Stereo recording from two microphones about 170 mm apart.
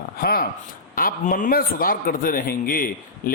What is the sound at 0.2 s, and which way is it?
A man's voice, 60° left (ahead or behind).